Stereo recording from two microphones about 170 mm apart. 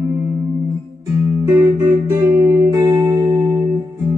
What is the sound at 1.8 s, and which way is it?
Music, 20° right (ahead or behind).